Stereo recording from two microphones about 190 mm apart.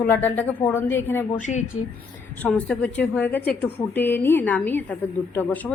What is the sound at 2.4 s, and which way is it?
Speech, 5° left (ahead or behind).